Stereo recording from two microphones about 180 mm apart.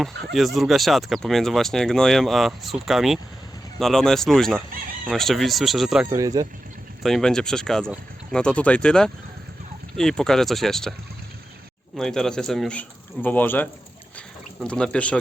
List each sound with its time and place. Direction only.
0.3 s speech: centre (ahead or behind)
6.1 s speech: 20° right (ahead or behind)
7.0 s speech: 5° left (ahead or behind)
11.9 s speech: 5° left (ahead or behind)